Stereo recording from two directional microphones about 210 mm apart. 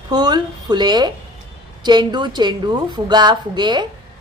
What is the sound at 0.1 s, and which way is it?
A woman's voice, 20° right (ahead or behind).